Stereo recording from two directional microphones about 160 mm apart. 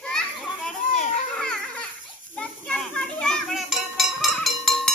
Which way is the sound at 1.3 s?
5° left (ahead or behind).